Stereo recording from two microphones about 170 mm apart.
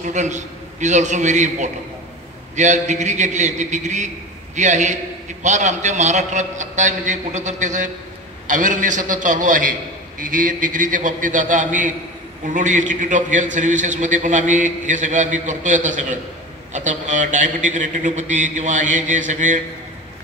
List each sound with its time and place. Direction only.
0.1 s a man's voice: 45° right (ahead or behind)